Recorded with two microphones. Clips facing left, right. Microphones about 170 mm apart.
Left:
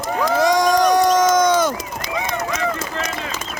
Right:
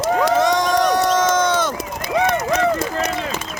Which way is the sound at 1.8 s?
55° right (ahead or behind).